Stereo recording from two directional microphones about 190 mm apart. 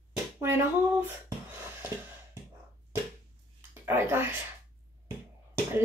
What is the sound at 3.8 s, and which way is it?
Speech, 10° right (ahead or behind).